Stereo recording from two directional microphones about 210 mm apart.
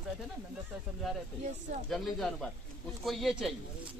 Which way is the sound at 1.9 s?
Centre (ahead or behind).